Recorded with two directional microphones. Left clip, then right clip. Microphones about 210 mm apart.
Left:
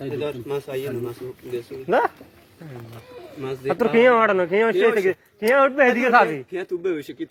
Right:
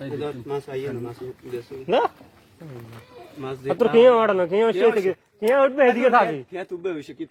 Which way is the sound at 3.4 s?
10° right (ahead or behind).